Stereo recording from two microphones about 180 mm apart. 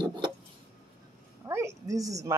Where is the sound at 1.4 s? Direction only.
15° right (ahead or behind).